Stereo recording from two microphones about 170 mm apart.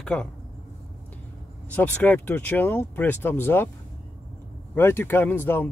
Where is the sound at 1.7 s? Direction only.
10° left (ahead or behind).